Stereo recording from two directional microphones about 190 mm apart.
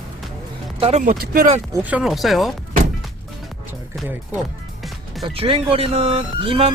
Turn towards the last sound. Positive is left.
turn(degrees=-30)  # may be behind; listen again after turning